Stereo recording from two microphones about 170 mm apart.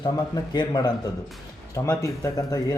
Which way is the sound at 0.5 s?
25° left (ahead or behind).